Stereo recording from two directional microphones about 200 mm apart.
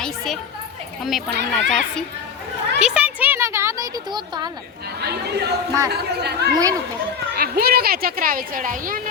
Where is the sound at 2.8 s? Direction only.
5° right (ahead or behind).